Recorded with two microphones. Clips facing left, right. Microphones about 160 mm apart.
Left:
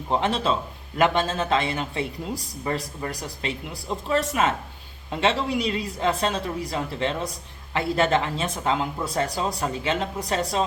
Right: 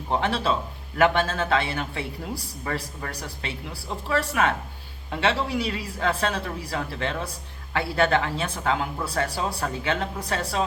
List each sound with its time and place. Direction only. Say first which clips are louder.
0.1 s speech: left 1 dB; 20° left (ahead or behind)